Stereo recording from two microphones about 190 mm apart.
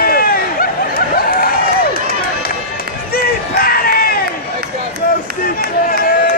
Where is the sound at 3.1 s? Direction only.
50° left (ahead or behind).